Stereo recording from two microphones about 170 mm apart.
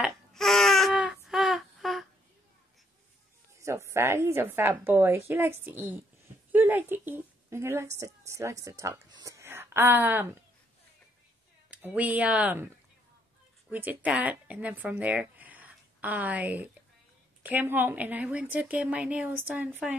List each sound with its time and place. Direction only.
0.0 s baby cry: centre (ahead or behind)
3.6 s a woman's voice: 15° right (ahead or behind)
11.7 s speech: 10° right (ahead or behind)
13.7 s speech: 10° right (ahead or behind)